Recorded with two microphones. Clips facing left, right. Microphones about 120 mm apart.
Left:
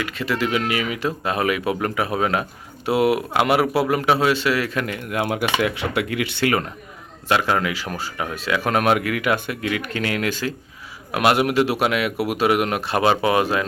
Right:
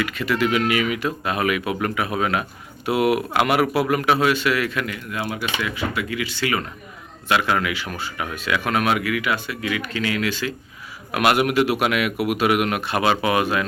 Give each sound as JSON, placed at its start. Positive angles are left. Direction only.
{"t": 0.0, "sound": "speech", "side_deg": 30}
{"t": 7.3, "sound": "speech", "side_deg": 35}
{"t": 11.1, "sound": "speech", "side_deg": 25}